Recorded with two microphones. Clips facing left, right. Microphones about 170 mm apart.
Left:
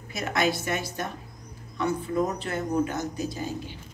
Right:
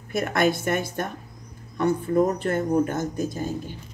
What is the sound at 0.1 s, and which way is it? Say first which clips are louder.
Speech: right 4 dB; 55° right (ahead or behind).